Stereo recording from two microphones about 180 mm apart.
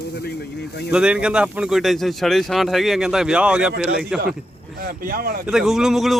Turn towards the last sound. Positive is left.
turn(degrees=0)  # may be behind; listen again after turning